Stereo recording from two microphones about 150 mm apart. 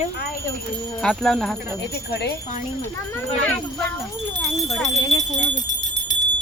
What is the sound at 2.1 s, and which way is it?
Speech, 90° left.